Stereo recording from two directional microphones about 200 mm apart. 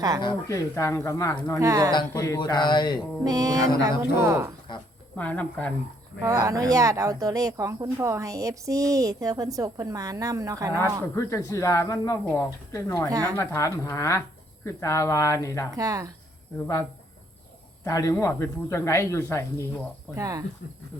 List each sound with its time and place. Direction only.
0.2 s speech: 20° left (ahead or behind)
1.5 s speech: 15° right (ahead or behind)
1.9 s speech: 20° left (ahead or behind)
3.2 s speech: 15° right (ahead or behind)
5.1 s speech: 5° left (ahead or behind)
6.2 s speech: 15° right (ahead or behind)
11.1 s speech: 15° left (ahead or behind)
13.1 s speech: 15° right (ahead or behind)
13.3 s speech: 15° left (ahead or behind)
15.7 s speech: 15° right (ahead or behind)
17.8 s speech: 15° left (ahead or behind)
20.1 s speech: 15° right (ahead or behind)